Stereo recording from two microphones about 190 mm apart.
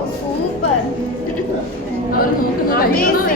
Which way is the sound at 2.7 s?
45° left (ahead or behind).